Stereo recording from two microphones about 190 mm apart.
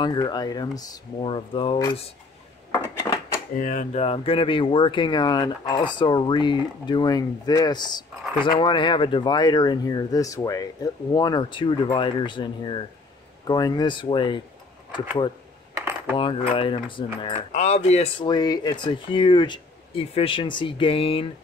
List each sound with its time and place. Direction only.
0.0 s speech: 20° left (ahead or behind)
3.5 s speech: 45° left (ahead or behind); by 17.5 s 25° left (ahead or behind)
17.5 s speech: 40° left (ahead or behind)